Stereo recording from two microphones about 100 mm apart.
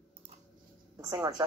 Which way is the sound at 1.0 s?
35° right (ahead or behind).